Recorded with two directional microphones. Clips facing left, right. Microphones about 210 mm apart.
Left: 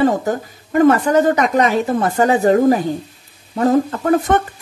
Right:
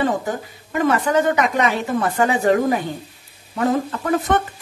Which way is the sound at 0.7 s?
45° left (ahead or behind).